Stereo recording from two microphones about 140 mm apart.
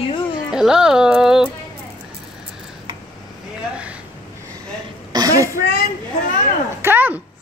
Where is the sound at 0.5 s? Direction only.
5° right (ahead or behind).